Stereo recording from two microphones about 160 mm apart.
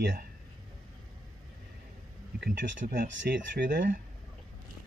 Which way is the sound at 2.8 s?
70° right (ahead or behind).